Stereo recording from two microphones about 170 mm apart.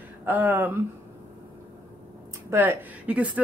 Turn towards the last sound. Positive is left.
turn(degrees=-10)  # may be behind; listen again after turning